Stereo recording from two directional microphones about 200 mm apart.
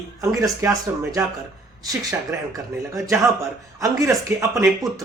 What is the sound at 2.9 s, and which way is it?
Speech, 15° right (ahead or behind).